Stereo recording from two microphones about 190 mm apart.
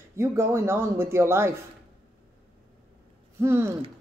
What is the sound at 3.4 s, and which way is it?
Speech, 15° right (ahead or behind).